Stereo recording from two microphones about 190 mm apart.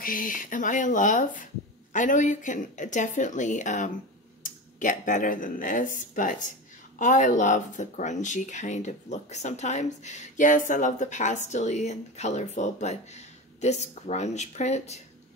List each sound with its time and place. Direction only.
0.0 s speech: 50° left (ahead or behind)